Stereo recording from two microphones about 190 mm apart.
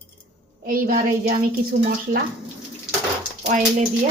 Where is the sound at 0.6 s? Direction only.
50° right (ahead or behind).